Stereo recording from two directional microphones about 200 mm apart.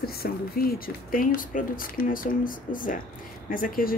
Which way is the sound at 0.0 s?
50° left (ahead or behind).